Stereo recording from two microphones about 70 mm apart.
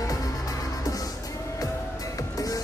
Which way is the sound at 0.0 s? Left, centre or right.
Left.